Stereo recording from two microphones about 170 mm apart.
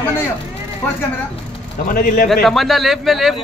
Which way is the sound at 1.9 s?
60° left (ahead or behind).